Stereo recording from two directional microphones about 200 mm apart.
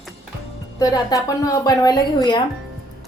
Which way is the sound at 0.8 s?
20° left (ahead or behind).